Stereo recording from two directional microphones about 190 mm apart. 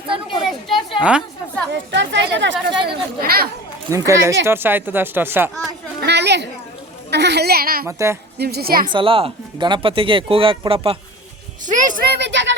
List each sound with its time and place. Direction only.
0.9 s a woman's voice: 5° right (ahead or behind)
1.7 s speech: 70° right (ahead or behind); by 3.5 s 55° right (ahead or behind)
3.8 s speech: 15° right (ahead or behind)
6.0 s chatter: 65° right (ahead or behind)
7.1 s speech: 60° right (ahead or behind)
7.9 s speech: 15° right (ahead or behind)
8.4 s speech: 55° right (ahead or behind)
8.9 s speech: 25° right (ahead or behind)
11.6 s a sound: 40° right (ahead or behind)
12.1 s a sound: 65° right (ahead or behind)